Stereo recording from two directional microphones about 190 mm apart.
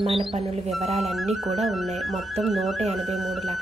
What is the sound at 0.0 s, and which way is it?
Speech, 30° right (ahead or behind).